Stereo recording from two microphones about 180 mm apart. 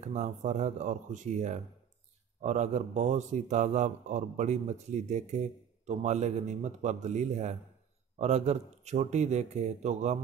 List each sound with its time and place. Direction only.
0.0 s a man's voice: 40° right (ahead or behind)